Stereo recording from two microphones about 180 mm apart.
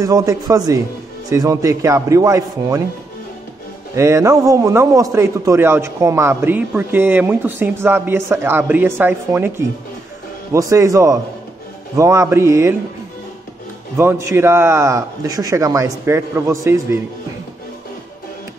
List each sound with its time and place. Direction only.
0.0 s a man's voice: 20° right (ahead or behind)
3.9 s a man's voice: 15° right (ahead or behind)
10.5 s a man's voice: 15° right (ahead or behind)
13.9 s a man's voice: 15° right (ahead or behind)